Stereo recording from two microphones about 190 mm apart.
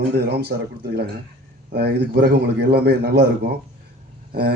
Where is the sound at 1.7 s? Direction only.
60° right (ahead or behind).